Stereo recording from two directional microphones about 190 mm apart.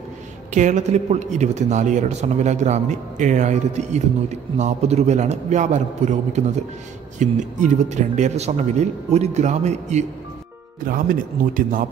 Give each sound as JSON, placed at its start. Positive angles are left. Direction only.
{"t": 0.5, "sound": "a man's voice", "side_deg": -40}